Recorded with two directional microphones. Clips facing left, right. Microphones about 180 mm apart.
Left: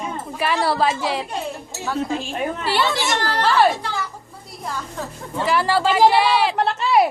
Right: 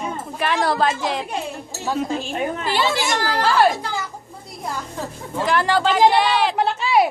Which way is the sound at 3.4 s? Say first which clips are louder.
Even; centre (ahead or behind).